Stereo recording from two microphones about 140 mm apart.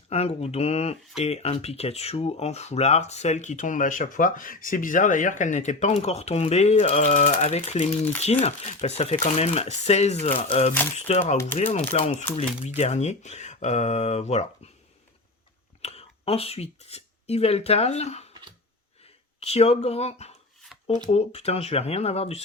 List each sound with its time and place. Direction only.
0.1 s speech: 50° left (ahead or behind)
10.9 s speech: 55° left (ahead or behind)
15.8 s speech: 45° left (ahead or behind)
19.4 s speech: 50° left (ahead or behind)
20.7 s shuffling cards: centre (ahead or behind)
21.1 s speech: 45° left (ahead or behind)